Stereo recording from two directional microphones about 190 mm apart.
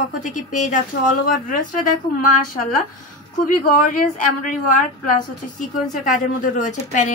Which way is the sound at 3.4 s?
45° left (ahead or behind).